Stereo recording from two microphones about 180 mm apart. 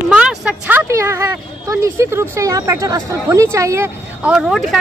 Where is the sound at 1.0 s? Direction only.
15° right (ahead or behind).